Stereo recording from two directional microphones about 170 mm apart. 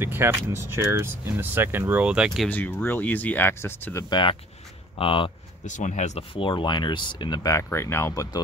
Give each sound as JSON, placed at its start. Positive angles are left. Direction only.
{"t": 0.0, "sound": "speech", "side_deg": -15}
{"t": 2.5, "sound": "speech", "side_deg": 10}
{"t": 4.1, "sound": "speech", "side_deg": 30}
{"t": 5.7, "sound": "speech", "side_deg": 45}